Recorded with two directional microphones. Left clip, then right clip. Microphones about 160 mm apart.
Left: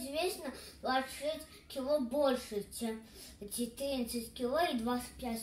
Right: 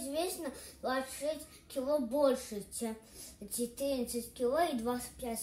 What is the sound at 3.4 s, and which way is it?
A child's voice, 5° left (ahead or behind).